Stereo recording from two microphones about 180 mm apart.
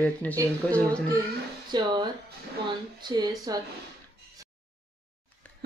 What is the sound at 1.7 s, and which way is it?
Speech, 25° right (ahead or behind).